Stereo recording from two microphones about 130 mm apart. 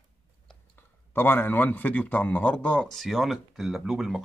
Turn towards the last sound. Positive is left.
turn(degrees=-5)  # may be behind; listen again after turning